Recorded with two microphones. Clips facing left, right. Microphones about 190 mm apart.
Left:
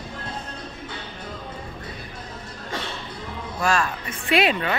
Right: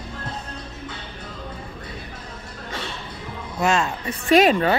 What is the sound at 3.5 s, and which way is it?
Speech, 20° right (ahead or behind).